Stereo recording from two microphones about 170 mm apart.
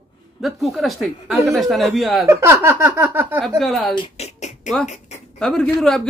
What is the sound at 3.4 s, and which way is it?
Speech, 5° left (ahead or behind).